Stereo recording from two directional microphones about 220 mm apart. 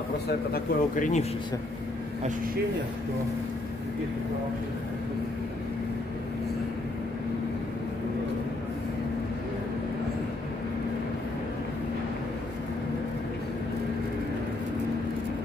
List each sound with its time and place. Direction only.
0.5 s speech: 35° left (ahead or behind)